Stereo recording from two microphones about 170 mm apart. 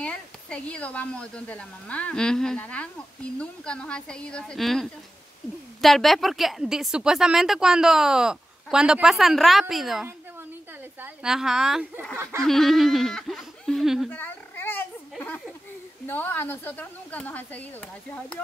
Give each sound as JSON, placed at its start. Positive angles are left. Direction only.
{"t": 0.0, "sound": "a woman's voice", "side_deg": 5}
{"t": 12.2, "sound": "snicker", "side_deg": -15}
{"t": 12.4, "sound": "a woman's voice", "side_deg": 0}
{"t": 14.1, "sound": "a sound", "side_deg": 10}
{"t": 16.1, "sound": "speech", "side_deg": 10}